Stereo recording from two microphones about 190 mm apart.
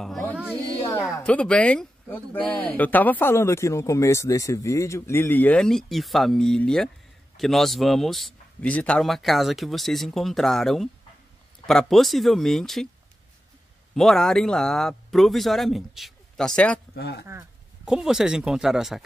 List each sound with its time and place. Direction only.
0.0 s music: centre (ahead or behind)
0.6 s a sound: 15° left (ahead or behind)
1.2 s a man's voice: 5° left (ahead or behind)
13.9 s a man's voice: centre (ahead or behind)
16.9 s speech: 55° left (ahead or behind)
17.8 s a man's voice: 5° right (ahead or behind)